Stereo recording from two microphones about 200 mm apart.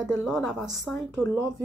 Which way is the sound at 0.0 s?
Centre (ahead or behind).